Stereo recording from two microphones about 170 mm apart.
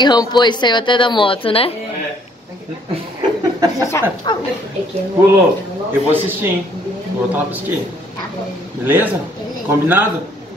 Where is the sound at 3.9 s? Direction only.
15° left (ahead or behind).